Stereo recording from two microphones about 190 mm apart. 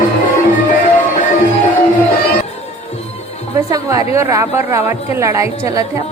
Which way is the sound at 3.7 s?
15° right (ahead or behind).